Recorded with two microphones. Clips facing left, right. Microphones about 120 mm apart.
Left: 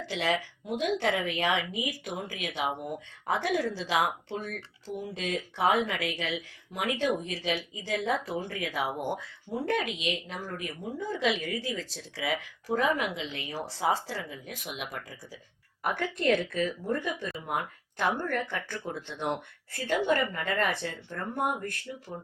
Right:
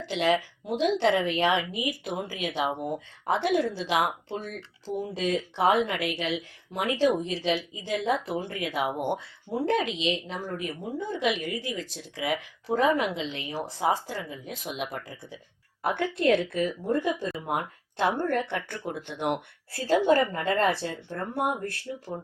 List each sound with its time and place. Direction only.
0.0 s a woman's voice: 20° right (ahead or behind)
4.9 s speech: 35° right (ahead or behind)
5.5 s a woman's voice: 20° right (ahead or behind)
14.6 s a woman's voice: 30° right (ahead or behind)
19.7 s a woman's voice: 35° right (ahead or behind)
21.1 s speech: 10° right (ahead or behind)
21.5 s speech: 35° right (ahead or behind)